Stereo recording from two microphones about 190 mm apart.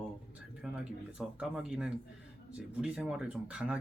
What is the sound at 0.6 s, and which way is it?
Speech, 5° right (ahead or behind).